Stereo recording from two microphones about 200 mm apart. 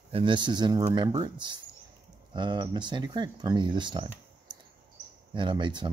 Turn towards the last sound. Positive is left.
turn(degrees=-25)  # may be behind; listen again after turning